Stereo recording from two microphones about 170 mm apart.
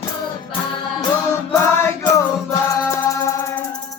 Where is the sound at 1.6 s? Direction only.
15° left (ahead or behind).